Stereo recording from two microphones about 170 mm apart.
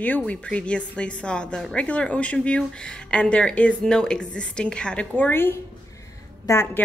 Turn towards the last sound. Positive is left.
turn(degrees=15)  # may be behind; listen again after turning